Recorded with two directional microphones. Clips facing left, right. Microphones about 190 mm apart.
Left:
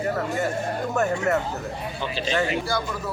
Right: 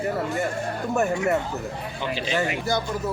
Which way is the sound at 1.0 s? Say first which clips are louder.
Even; 10° right (ahead or behind).